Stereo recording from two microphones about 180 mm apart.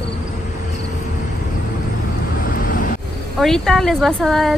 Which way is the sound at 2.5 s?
50° left (ahead or behind).